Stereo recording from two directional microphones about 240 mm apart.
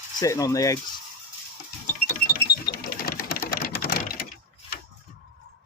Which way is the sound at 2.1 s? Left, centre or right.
Left.